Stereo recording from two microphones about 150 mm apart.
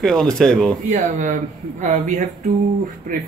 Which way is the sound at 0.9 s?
55° right (ahead or behind).